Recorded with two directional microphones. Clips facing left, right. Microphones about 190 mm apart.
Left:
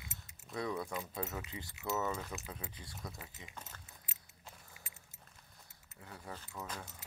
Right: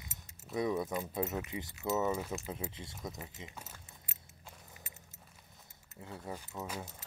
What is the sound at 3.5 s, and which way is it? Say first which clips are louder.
Speech: right 1 dB; 10° right (ahead or behind).